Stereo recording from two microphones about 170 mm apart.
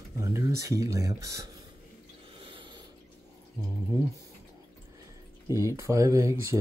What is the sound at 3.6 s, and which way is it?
Speech, 25° right (ahead or behind).